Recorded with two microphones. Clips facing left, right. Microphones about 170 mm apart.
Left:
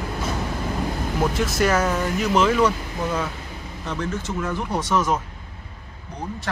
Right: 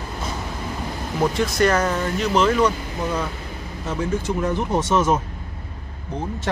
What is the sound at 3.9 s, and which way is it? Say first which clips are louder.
Speech: right 4 dB; 10° right (ahead or behind).